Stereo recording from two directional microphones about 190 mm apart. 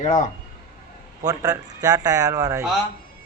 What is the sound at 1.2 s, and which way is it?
Speech, 20° right (ahead or behind).